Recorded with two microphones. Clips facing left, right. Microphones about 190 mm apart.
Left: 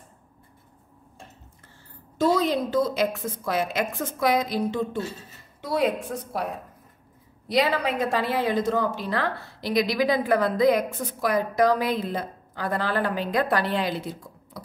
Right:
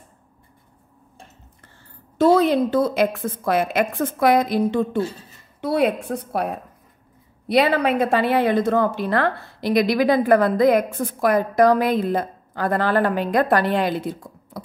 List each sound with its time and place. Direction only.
2.1 s a woman's voice: 60° right (ahead or behind)